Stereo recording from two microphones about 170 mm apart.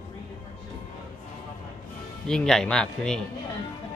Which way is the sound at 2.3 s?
5° left (ahead or behind).